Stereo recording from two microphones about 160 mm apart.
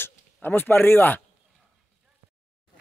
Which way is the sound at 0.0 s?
10° left (ahead or behind).